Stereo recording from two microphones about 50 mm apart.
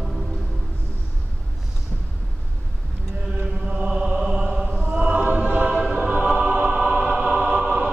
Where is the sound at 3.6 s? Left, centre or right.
Centre.